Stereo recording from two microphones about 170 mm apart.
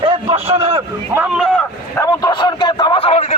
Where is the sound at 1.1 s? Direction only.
10° right (ahead or behind).